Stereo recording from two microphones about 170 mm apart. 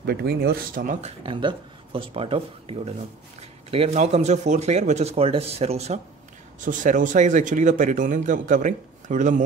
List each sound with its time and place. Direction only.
0.0 s speech: 70° right (ahead or behind); by 1.1 s 50° right (ahead or behind)
1.2 s speech: 30° right (ahead or behind)
6.6 s a man's voice: 50° right (ahead or behind)